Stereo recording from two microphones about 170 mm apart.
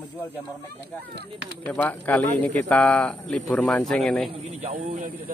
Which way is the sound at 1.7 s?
10° left (ahead or behind).